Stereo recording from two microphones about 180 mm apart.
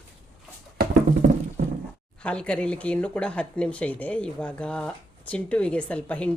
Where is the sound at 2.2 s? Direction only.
5° left (ahead or behind).